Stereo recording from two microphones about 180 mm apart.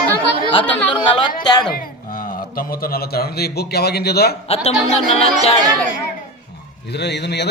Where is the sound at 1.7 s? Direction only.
50° left (ahead or behind).